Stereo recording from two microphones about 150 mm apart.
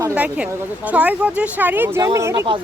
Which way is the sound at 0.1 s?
10° right (ahead or behind).